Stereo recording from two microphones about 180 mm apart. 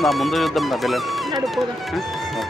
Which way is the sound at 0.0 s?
Centre (ahead or behind).